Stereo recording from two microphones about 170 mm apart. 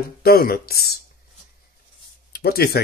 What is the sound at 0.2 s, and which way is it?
Speech, 65° left (ahead or behind).